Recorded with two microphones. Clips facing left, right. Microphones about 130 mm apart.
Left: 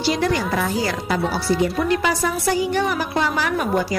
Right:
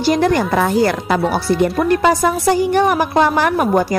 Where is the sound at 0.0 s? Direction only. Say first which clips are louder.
Right 6 dB; 50° right (ahead or behind).